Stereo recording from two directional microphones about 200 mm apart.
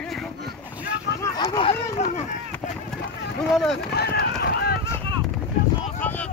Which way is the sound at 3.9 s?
55° left (ahead or behind).